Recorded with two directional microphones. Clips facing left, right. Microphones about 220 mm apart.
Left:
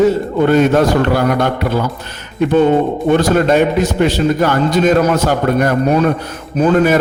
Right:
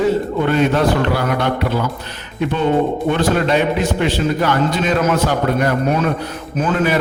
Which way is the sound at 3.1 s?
45° left (ahead or behind).